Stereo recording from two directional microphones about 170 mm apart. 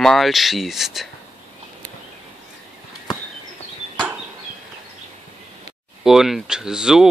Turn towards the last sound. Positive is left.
turn(degrees=-5)  # may be behind; listen again after turning